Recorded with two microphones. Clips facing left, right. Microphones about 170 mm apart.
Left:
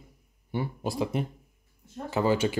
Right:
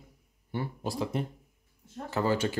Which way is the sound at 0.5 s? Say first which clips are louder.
Left 3 dB; 15° left (ahead or behind).